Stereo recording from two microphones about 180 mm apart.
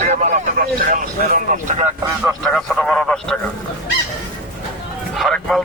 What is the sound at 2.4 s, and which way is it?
Speech, centre (ahead or behind).